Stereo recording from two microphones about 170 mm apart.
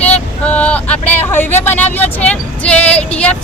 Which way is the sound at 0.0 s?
10° left (ahead or behind).